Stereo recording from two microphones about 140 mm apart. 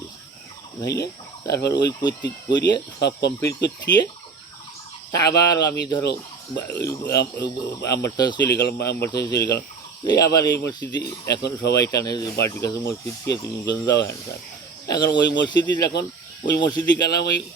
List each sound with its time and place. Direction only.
0.8 s speech: 25° left (ahead or behind)
5.1 s a man's voice: 25° left (ahead or behind)
10.0 s speech: 30° left (ahead or behind)